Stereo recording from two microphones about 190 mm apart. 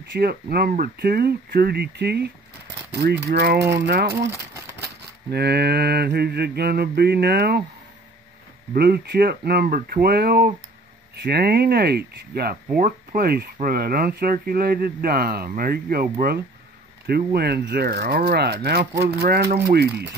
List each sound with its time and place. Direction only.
0.0 s speech: 60° right (ahead or behind)
5.3 s speech: 60° right (ahead or behind)
8.7 s speech: 55° right (ahead or behind)